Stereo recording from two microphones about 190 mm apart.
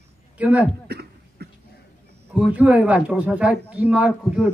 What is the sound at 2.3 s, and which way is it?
A man's voice, 5° right (ahead or behind).